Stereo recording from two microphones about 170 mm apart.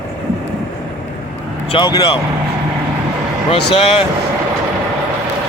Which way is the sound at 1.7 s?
25° left (ahead or behind).